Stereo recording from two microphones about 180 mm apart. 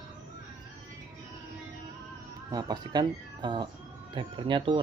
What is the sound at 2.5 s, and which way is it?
Speech, 20° right (ahead or behind).